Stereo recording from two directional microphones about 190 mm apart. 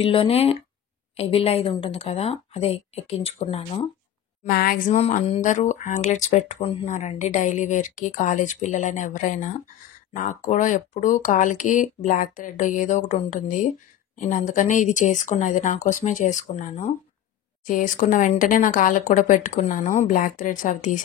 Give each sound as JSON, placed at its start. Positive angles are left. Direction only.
{"t": 0.0, "sound": "speech", "side_deg": 30}
{"t": 4.5, "sound": "a woman's voice", "side_deg": 50}